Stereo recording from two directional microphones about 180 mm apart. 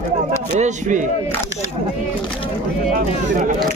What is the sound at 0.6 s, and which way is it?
Speech, 45° right (ahead or behind).